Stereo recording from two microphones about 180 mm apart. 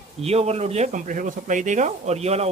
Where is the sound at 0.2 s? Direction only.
35° right (ahead or behind).